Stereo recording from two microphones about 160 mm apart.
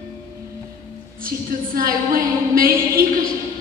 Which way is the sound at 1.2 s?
65° right (ahead or behind).